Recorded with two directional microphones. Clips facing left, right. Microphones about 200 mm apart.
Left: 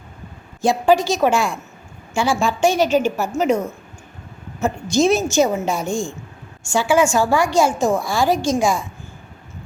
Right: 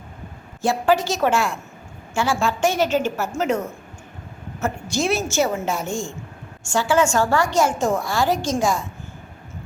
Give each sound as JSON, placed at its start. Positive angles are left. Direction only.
{"t": 0.6, "sound": "a woman's voice", "side_deg": 15}
{"t": 4.6, "sound": "a woman's voice", "side_deg": 20}